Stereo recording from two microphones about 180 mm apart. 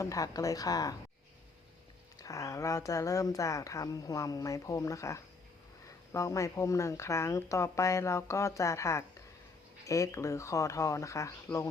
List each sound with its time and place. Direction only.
0.0 s speech: 20° left (ahead or behind)
2.1 s speech: 20° left (ahead or behind)